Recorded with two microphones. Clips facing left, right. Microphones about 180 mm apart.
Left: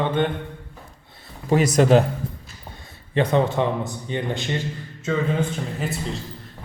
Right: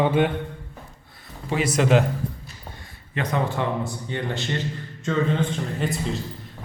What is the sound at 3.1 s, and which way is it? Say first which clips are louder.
A man's voice: left 6 dB; 30° left (ahead or behind).